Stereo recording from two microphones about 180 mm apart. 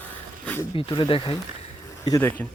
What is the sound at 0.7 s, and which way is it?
Speech, 25° left (ahead or behind).